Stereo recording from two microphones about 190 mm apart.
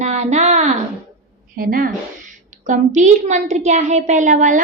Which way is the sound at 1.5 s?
50° right (ahead or behind).